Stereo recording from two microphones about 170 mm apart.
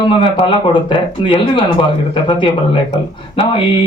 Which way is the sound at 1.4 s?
30° left (ahead or behind).